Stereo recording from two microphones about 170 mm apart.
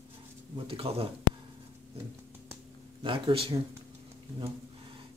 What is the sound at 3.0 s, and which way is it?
Speech, 30° right (ahead or behind).